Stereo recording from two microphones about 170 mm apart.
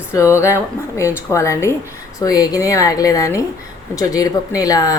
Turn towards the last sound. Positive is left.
turn(degrees=20)  # may be behind; listen again after turning